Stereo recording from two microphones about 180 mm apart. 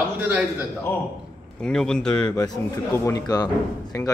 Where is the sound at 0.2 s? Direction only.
10° right (ahead or behind).